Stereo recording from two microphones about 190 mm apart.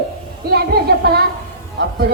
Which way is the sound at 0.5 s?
55° right (ahead or behind).